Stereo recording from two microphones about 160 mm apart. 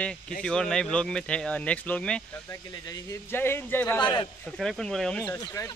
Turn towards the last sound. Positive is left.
turn(degrees=20)  # may be behind; listen again after turning